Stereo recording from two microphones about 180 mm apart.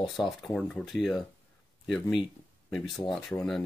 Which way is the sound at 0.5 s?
5° left (ahead or behind).